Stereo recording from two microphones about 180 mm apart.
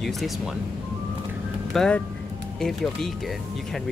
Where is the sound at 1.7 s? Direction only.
5° left (ahead or behind).